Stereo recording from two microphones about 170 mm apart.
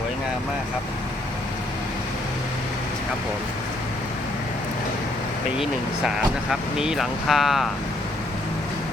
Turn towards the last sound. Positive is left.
turn(degrees=0)  # may be behind; listen again after turning